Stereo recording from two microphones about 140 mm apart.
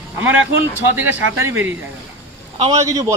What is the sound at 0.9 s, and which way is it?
Speech, 15° right (ahead or behind).